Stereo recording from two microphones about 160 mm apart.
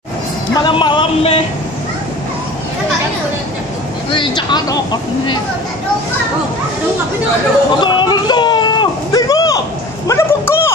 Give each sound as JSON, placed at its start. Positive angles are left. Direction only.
{"t": 0.6, "sound": "speech", "side_deg": 30}
{"t": 4.1, "sound": "speech", "side_deg": 30}
{"t": 7.8, "sound": "a sound", "side_deg": 30}